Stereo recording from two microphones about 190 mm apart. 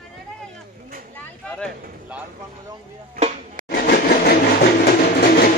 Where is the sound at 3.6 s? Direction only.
55° left (ahead or behind).